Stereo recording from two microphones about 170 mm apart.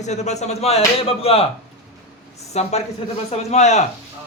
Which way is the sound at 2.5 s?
40° left (ahead or behind).